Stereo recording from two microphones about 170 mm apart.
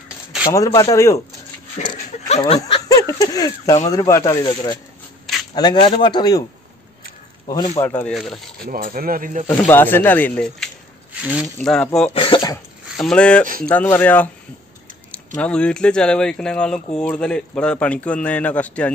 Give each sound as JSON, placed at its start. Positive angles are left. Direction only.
{"t": 0.5, "sound": "speech", "side_deg": 20}
{"t": 2.2, "sound": "speech", "side_deg": 40}
{"t": 2.9, "sound": "speech", "side_deg": 20}
{"t": 7.4, "sound": "a man's voice", "side_deg": 25}
{"t": 7.8, "sound": "speech", "side_deg": 10}
{"t": 8.6, "sound": "speech", "side_deg": -55}
{"t": 9.7, "sound": "a man's voice", "side_deg": 10}
{"t": 11.2, "sound": "speech", "side_deg": -5}
{"t": 11.5, "sound": "speech", "side_deg": 5}
{"t": 12.1, "sound": "speech", "side_deg": 30}
{"t": 12.9, "sound": "a man's voice", "side_deg": 5}